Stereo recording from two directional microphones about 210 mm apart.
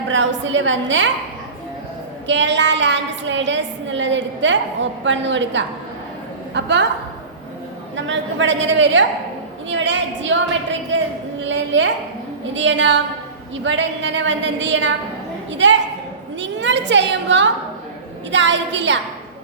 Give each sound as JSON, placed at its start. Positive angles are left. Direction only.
{"t": 0.1, "sound": "a woman's voice", "side_deg": -60}
{"t": 2.2, "sound": "a woman's voice", "side_deg": -60}
{"t": 7.9, "sound": "a woman's voice", "side_deg": -60}